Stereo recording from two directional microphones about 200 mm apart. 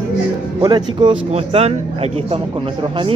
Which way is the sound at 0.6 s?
20° right (ahead or behind).